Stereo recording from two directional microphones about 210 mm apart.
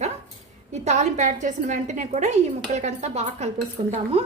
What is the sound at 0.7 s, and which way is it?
A woman's voice, 35° right (ahead or behind).